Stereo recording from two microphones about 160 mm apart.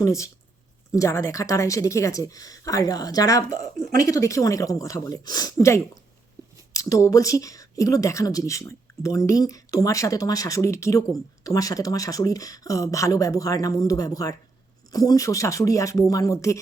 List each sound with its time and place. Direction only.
0.0 s a woman's voice: 20° left (ahead or behind)